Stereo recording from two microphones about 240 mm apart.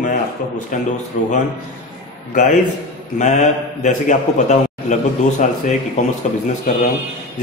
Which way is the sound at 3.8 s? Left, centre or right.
Left.